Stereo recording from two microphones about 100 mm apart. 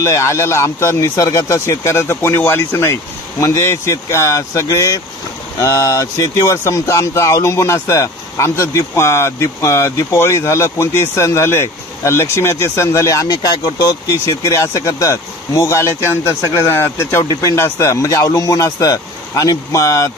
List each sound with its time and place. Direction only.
0.0 s speech: 30° left (ahead or behind)